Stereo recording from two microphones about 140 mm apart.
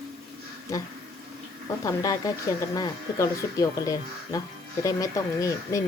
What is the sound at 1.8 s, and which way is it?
Speech, 25° left (ahead or behind).